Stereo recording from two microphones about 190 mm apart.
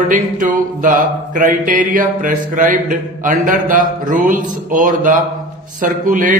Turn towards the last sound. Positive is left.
turn(degrees=-45)  # may be behind; listen again after turning